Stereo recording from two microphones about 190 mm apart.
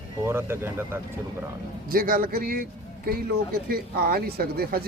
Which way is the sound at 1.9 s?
50° right (ahead or behind).